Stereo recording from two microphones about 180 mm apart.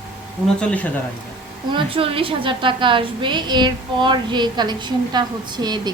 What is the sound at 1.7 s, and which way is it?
A woman's voice, 30° right (ahead or behind).